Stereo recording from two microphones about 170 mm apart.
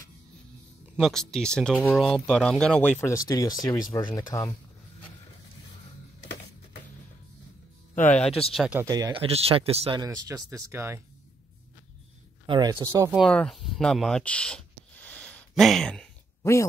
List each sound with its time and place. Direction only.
0.9 s speech: 5° left (ahead or behind)
3.1 s speech: 20° left (ahead or behind)
8.0 s speech: 10° left (ahead or behind)
8.3 s speech: 35° left (ahead or behind)
8.5 s speech: 5° right (ahead or behind)
8.8 s speech: 25° right (ahead or behind)
9.9 s speech: 20° right (ahead or behind)
12.4 s speech: 25° right (ahead or behind)
13.1 s speech: 5° left (ahead or behind)